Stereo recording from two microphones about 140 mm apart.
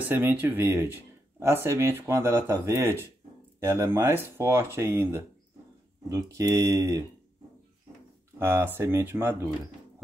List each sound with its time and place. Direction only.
0.1 s speech: 15° right (ahead or behind)
8.4 s speech: 15° right (ahead or behind)